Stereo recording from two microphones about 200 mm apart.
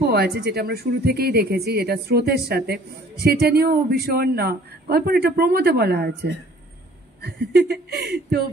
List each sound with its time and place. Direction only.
0.0 s a man's voice: 55° right (ahead or behind)